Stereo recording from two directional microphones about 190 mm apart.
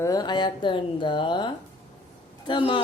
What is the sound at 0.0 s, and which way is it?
A woman's voice, 20° left (ahead or behind).